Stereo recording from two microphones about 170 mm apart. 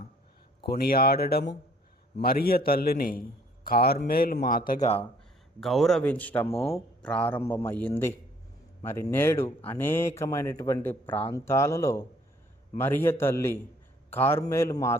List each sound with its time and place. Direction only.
0.7 s a man's voice: 60° left (ahead or behind)
5.5 s a man's voice: centre (ahead or behind)
6.5 s speech: 35° left (ahead or behind)
7.0 s a man's voice: 5° left (ahead or behind)